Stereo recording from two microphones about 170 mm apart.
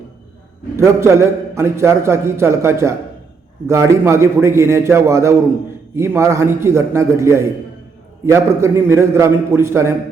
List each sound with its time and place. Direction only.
0.9 s a man's voice: 15° right (ahead or behind)